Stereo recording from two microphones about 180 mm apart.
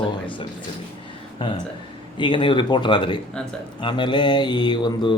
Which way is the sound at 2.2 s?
25° left (ahead or behind).